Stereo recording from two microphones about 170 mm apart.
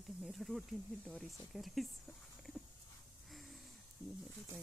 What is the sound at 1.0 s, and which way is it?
Speech, centre (ahead or behind).